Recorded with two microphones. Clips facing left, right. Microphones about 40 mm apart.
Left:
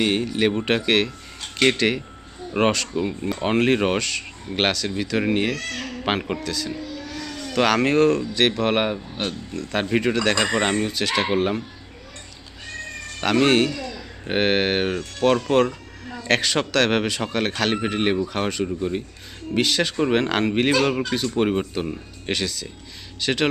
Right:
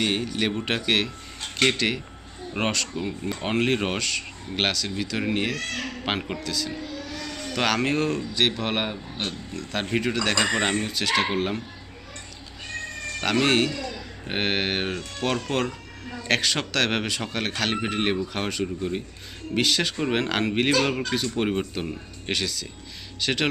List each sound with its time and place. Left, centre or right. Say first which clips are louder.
0.0 s speech: left 4 dB; centre
5.5 s speech: even; right
6.1 s speech: left 5 dB; centre
7.1 s vehicle: left 2 dB; centre
7.5 s speech: left 5 dB; centre
8.7 s speech: left 6 dB; centre
9.1 s speech: left 4 dB; centre
13.2 s speech: left 4 dB; centre
13.7 s a sound: left 1 dB; centre
14.3 s speech: left 5 dB; centre